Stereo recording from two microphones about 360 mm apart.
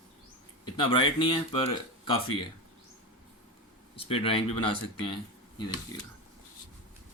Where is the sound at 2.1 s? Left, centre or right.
Left.